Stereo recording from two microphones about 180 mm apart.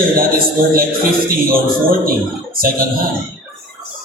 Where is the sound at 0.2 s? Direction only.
55° right (ahead or behind).